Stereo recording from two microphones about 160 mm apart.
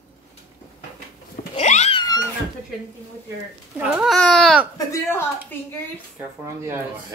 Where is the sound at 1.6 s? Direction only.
45° left (ahead or behind).